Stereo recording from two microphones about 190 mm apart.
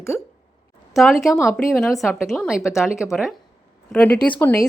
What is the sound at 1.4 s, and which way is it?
Speech, 15° left (ahead or behind).